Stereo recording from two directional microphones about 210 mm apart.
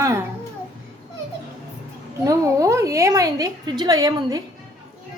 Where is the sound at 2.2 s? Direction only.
15° right (ahead or behind).